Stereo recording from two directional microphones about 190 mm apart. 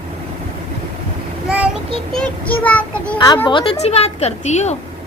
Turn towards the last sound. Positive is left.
turn(degrees=35)  # may be behind; listen again after turning